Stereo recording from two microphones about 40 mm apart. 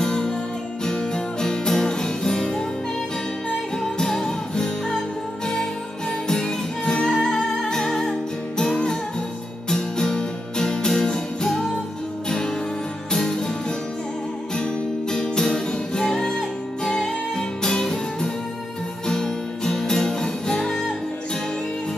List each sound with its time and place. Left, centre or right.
0.0 s music: centre
9.7 s music: centre